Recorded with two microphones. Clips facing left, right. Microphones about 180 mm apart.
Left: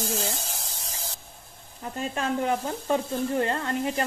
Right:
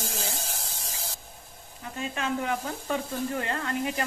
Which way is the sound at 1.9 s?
35° left (ahead or behind).